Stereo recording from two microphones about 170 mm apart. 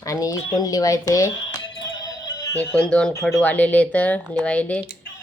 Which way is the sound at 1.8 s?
25° left (ahead or behind).